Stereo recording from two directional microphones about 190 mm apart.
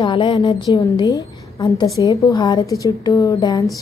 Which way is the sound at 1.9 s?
15° left (ahead or behind).